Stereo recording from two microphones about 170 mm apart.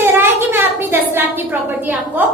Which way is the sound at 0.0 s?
15° right (ahead or behind).